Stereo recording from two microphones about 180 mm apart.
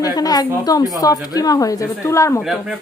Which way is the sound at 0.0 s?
20° left (ahead or behind).